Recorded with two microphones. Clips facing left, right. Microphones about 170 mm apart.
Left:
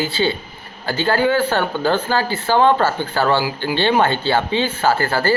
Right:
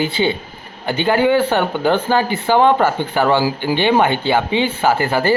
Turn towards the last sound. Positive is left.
turn(degrees=-15)  # may be behind; listen again after turning